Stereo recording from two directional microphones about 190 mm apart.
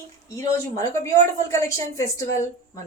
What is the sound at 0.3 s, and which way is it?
Speech, 15° left (ahead or behind).